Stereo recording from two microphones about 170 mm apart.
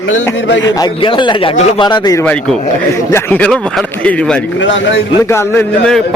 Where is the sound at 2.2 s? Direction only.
5° left (ahead or behind).